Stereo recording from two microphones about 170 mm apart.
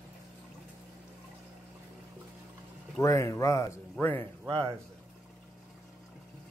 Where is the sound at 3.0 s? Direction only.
15° left (ahead or behind).